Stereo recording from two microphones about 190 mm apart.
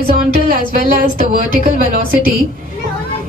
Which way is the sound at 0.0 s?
45° right (ahead or behind).